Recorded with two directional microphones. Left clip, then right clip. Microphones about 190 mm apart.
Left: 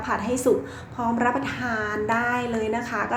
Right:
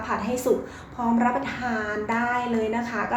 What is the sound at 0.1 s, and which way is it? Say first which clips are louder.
A woman's voice: left 2 dB; 20° left (ahead or behind).